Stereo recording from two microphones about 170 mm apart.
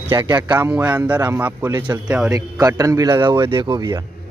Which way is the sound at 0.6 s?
10° right (ahead or behind).